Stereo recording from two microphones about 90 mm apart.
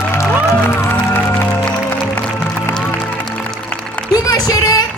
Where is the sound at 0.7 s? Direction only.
25° left (ahead or behind).